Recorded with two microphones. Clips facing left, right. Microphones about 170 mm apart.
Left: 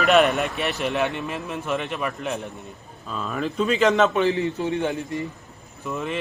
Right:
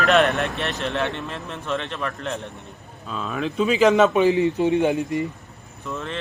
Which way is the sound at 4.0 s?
15° right (ahead or behind).